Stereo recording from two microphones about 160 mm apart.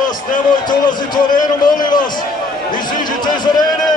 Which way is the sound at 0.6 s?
25° left (ahead or behind).